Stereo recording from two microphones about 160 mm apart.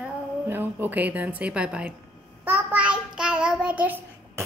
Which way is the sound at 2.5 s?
10° right (ahead or behind).